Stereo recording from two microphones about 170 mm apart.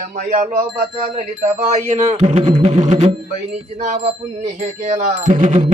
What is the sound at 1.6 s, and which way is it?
Speech, 40° right (ahead or behind).